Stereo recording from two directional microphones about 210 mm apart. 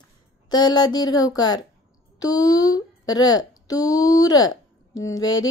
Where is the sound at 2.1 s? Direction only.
15° left (ahead or behind).